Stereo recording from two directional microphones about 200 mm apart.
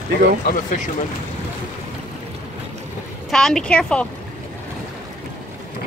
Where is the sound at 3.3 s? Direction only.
5° left (ahead or behind).